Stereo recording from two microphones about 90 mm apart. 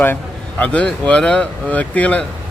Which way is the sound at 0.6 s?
15° left (ahead or behind).